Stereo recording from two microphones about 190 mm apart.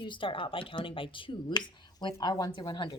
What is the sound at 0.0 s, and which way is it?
Speech, 25° left (ahead or behind).